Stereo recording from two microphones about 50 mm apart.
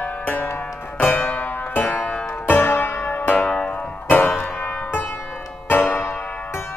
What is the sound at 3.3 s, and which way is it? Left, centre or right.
Music, centre.